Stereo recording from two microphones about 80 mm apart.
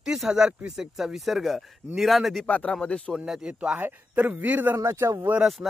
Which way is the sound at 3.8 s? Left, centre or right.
Right.